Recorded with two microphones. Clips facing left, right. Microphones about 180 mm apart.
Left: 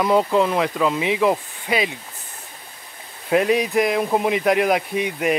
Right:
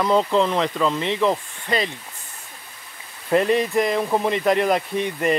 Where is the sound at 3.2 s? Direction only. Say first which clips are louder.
Even; 5° left (ahead or behind).